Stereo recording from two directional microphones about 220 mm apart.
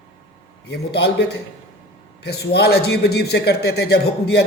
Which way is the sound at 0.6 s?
50° left (ahead or behind).